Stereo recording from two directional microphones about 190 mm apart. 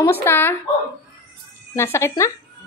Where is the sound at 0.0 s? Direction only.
10° left (ahead or behind).